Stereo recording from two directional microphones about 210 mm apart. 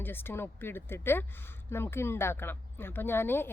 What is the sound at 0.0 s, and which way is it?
Speech, 10° left (ahead or behind).